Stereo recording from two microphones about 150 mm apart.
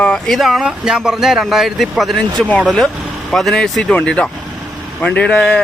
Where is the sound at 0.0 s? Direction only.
5° left (ahead or behind).